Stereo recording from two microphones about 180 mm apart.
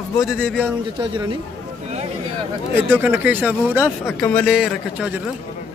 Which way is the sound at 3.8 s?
10° left (ahead or behind).